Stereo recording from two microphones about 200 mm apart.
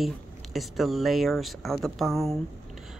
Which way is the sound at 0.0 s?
Centre (ahead or behind).